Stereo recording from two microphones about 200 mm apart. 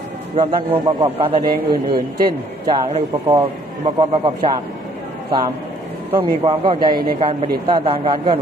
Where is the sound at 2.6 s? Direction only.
30° right (ahead or behind).